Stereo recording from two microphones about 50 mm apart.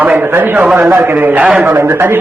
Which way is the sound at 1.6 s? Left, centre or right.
Right.